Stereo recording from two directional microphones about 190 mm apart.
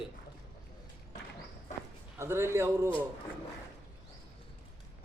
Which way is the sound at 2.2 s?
15° right (ahead or behind).